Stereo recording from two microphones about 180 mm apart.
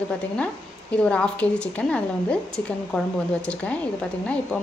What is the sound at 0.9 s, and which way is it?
A woman's voice, 5° left (ahead or behind).